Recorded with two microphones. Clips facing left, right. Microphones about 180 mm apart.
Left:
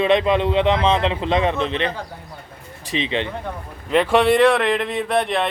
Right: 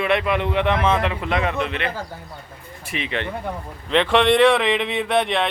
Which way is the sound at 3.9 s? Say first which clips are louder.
Left 1 dB; 10° left (ahead or behind).